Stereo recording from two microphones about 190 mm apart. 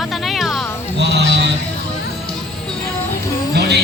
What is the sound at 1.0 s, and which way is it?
Speech, 65° right (ahead or behind).